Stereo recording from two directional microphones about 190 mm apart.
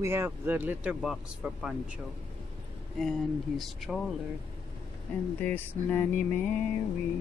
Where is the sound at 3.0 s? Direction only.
Centre (ahead or behind).